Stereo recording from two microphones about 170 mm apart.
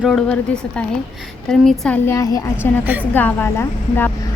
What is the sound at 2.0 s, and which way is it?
Speech, 20° left (ahead or behind).